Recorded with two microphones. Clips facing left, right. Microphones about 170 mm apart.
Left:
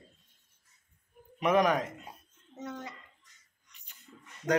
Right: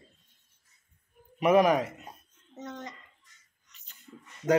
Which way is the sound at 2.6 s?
10° left (ahead or behind).